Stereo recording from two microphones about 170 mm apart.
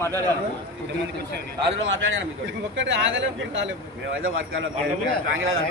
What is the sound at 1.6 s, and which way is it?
Speech, 35° right (ahead or behind).